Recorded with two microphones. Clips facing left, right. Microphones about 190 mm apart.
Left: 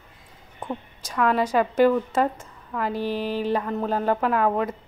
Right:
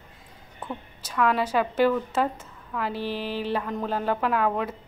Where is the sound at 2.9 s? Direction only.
40° left (ahead or behind).